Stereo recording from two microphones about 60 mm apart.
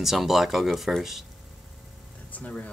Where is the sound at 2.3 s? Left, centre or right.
Left.